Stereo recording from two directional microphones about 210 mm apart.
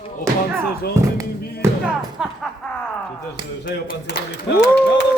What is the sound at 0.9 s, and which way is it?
Speech, 15° right (ahead or behind).